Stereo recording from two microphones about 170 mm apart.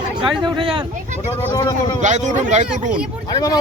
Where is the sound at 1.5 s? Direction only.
20° left (ahead or behind).